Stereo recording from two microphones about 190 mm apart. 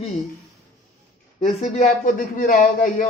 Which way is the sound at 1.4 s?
35° left (ahead or behind).